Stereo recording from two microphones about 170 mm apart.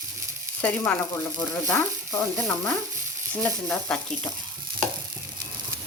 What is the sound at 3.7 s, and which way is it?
Speech, 5° left (ahead or behind).